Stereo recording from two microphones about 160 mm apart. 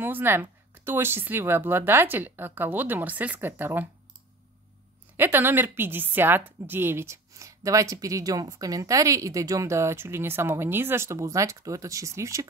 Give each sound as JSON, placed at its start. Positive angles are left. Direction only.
{"t": 0.0, "sound": "speech", "side_deg": -15}
{"t": 5.1, "sound": "a woman's voice", "side_deg": -15}